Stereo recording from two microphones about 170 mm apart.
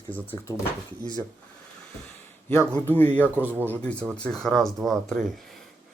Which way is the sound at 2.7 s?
10° left (ahead or behind).